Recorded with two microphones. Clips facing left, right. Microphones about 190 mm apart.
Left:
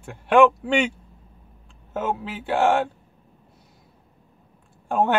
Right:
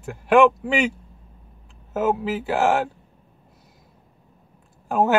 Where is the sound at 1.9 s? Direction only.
5° right (ahead or behind).